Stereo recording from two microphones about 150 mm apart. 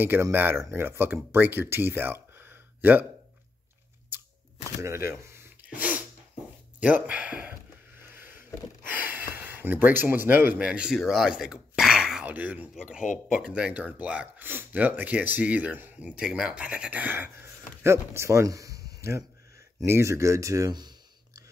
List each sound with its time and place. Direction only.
0.0 s speech: 15° right (ahead or behind)
4.8 s speech: 20° right (ahead or behind)
5.6 s sneeze: 10° right (ahead or behind)
6.8 s a sound: 10° right (ahead or behind)
13.4 s speech: 5° right (ahead or behind); by 20.9 s 25° right (ahead or behind)